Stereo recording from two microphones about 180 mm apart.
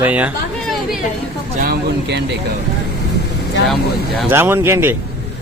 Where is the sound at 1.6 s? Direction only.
65° right (ahead or behind).